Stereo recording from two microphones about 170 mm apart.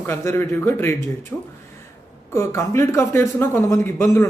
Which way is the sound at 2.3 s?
15° left (ahead or behind).